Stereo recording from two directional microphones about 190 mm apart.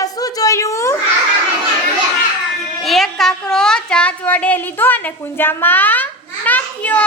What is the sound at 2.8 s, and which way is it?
Speech, centre (ahead or behind).